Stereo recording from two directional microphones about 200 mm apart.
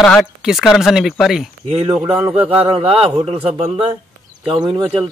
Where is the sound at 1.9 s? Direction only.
5° right (ahead or behind).